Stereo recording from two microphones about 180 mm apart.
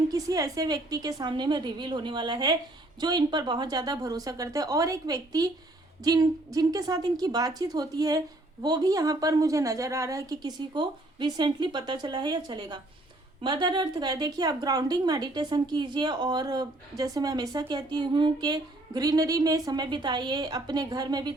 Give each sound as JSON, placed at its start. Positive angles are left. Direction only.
{"t": 0.1, "sound": "speech", "side_deg": -20}